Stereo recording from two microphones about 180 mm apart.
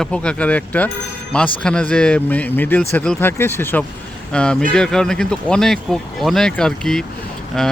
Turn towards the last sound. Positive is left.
turn(degrees=5)  # may be behind; listen again after turning